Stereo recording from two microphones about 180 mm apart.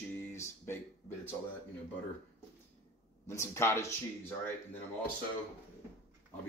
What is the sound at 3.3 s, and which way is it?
Speech, 15° left (ahead or behind).